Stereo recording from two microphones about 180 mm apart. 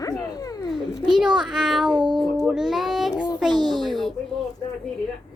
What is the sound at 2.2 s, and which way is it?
A child's voice, centre (ahead or behind).